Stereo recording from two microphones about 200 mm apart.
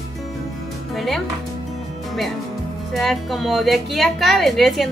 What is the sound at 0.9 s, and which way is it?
Speech, centre (ahead or behind).